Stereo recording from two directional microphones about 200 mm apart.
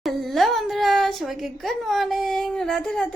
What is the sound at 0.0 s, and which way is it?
A woman's voice, centre (ahead or behind).